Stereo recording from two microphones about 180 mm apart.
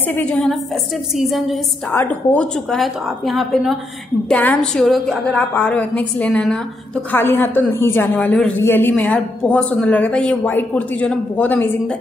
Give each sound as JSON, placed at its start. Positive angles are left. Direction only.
{"t": 0.1, "sound": "a woman's voice", "side_deg": 5}